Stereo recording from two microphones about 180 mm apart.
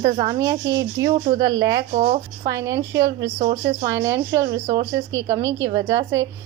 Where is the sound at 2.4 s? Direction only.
15° right (ahead or behind).